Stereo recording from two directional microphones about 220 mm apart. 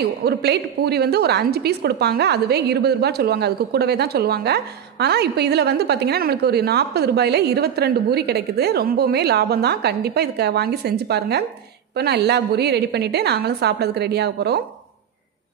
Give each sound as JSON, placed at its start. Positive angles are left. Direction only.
{"t": 0.0, "sound": "a woman's voice", "side_deg": -45}